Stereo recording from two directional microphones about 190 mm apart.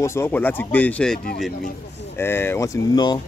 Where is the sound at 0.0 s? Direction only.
15° left (ahead or behind).